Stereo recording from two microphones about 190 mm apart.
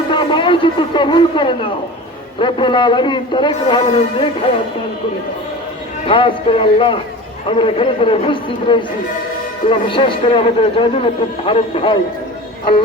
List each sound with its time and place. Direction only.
0.1 s a man's voice: 25° left (ahead or behind)
6.1 s a man's voice: 25° left (ahead or behind)